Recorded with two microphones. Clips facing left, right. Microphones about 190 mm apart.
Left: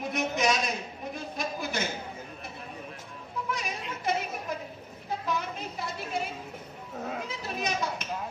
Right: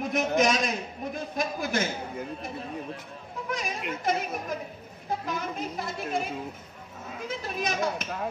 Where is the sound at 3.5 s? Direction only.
50° right (ahead or behind).